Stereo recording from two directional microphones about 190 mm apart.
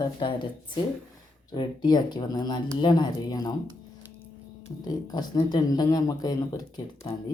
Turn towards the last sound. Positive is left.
turn(degrees=20)  # may be behind; listen again after turning